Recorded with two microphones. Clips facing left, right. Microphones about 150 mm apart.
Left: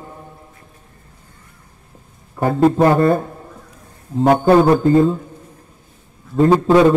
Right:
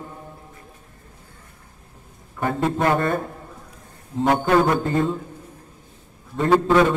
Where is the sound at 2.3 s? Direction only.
35° left (ahead or behind).